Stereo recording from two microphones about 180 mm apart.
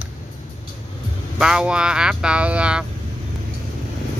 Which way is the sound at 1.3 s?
5° right (ahead or behind).